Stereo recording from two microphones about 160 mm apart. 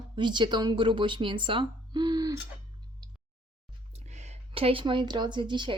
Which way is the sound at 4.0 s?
45° right (ahead or behind).